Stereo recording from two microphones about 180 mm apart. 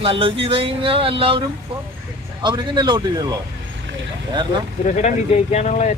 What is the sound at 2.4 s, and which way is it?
Speech, 25° right (ahead or behind).